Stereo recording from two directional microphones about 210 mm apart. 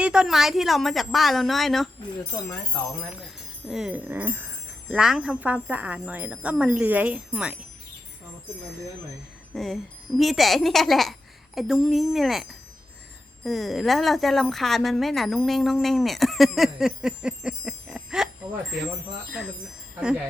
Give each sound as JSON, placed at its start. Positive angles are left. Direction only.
{"t": 0.0, "sound": "a woman's voice", "side_deg": -5}
{"t": 3.7, "sound": "speech", "side_deg": -5}
{"t": 9.5, "sound": "a woman's voice", "side_deg": 0}